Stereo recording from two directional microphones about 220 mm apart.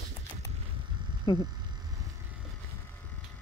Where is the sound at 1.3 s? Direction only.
15° left (ahead or behind).